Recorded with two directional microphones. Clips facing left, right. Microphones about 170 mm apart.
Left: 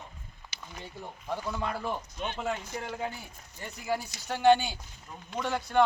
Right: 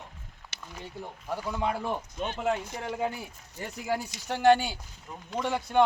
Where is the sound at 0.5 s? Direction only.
70° right (ahead or behind).